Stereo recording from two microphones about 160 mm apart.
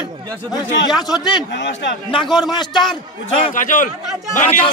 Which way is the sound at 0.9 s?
25° left (ahead or behind).